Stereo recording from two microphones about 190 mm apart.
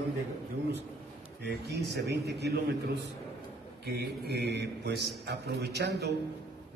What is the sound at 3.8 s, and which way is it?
A man's voice, 60° right (ahead or behind).